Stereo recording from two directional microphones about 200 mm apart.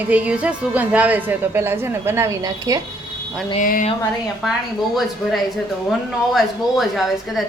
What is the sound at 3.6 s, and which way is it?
Speech, 40° left (ahead or behind).